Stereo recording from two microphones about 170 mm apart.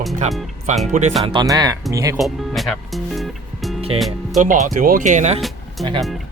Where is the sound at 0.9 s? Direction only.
45° right (ahead or behind).